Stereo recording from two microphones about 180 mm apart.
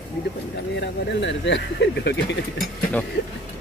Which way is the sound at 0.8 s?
75° left (ahead or behind).